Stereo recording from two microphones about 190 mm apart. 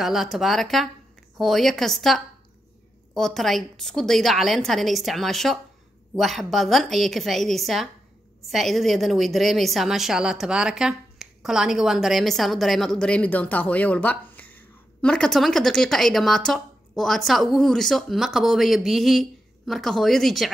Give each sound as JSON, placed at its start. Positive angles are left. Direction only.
{"t": 0.0, "sound": "a woman's voice", "side_deg": 0}